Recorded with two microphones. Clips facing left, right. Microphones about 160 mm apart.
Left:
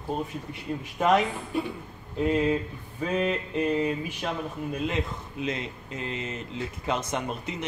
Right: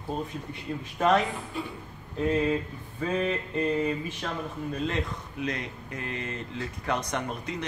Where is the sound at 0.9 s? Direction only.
15° left (ahead or behind).